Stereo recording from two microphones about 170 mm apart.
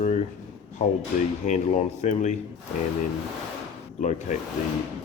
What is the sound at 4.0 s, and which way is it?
Speech, 45° left (ahead or behind).